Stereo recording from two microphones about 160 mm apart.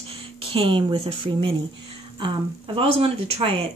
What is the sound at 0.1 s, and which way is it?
Speech, 35° right (ahead or behind).